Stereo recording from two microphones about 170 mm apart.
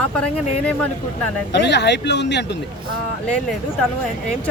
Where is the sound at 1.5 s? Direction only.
85° left.